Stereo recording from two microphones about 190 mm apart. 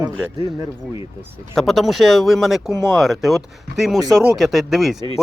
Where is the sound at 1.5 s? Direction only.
Centre (ahead or behind).